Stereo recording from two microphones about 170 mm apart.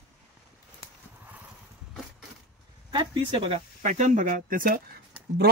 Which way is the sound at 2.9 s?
30° right (ahead or behind).